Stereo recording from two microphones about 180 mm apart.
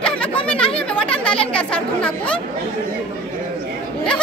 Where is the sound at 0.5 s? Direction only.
30° left (ahead or behind).